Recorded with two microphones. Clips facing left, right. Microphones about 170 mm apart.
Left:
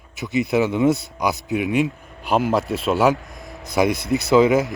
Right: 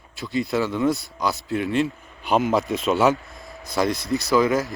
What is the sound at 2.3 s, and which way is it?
Speech, 5° left (ahead or behind).